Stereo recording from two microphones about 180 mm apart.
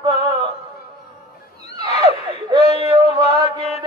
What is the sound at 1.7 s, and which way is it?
Neigh, 35° left (ahead or behind).